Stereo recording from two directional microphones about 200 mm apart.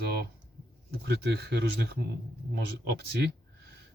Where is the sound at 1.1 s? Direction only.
55° right (ahead or behind).